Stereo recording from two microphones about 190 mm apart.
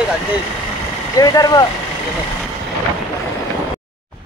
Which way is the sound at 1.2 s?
20° left (ahead or behind).